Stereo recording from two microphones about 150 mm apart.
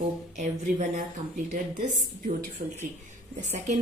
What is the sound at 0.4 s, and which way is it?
A woman's voice, 55° right (ahead or behind).